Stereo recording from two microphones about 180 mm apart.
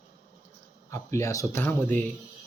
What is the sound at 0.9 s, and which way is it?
Speech, 15° left (ahead or behind).